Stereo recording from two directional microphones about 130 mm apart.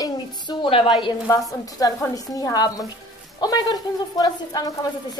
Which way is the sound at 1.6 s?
25° left (ahead or behind).